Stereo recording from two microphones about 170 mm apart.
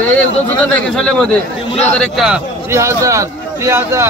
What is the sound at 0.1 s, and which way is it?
A man's voice, 5° left (ahead or behind).